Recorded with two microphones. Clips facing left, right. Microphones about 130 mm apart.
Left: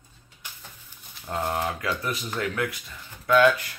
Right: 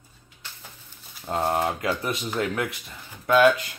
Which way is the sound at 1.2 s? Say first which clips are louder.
Right 3 dB; 20° right (ahead or behind).